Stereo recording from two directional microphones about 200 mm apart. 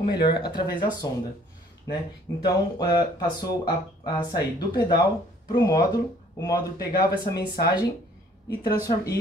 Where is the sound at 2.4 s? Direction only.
20° left (ahead or behind).